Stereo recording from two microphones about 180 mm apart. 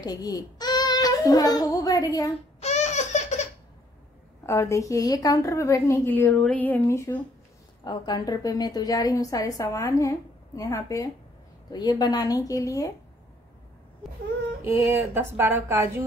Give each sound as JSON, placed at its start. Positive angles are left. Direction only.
{"t": 0.0, "sound": "a child's voice", "side_deg": 20}
{"t": 2.6, "sound": "laughter", "side_deg": 40}
{"t": 4.5, "sound": "a woman's voice", "side_deg": 15}
{"t": 7.8, "sound": "a woman's voice", "side_deg": 25}
{"t": 14.6, "sound": "speech", "side_deg": -15}